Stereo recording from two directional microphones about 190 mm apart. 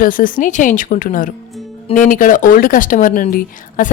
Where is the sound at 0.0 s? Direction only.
45° left (ahead or behind).